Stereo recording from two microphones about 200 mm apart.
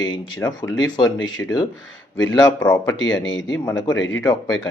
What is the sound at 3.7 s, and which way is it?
Speech, 20° left (ahead or behind).